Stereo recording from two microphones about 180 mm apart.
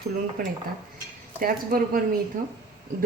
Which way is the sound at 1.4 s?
55° right (ahead or behind).